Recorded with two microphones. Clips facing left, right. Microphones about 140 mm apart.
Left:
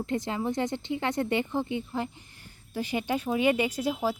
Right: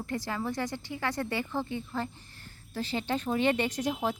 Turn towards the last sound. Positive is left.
turn(degrees=5)  # may be behind; listen again after turning